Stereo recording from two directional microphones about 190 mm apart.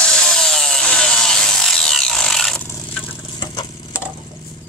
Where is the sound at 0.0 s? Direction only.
5° left (ahead or behind).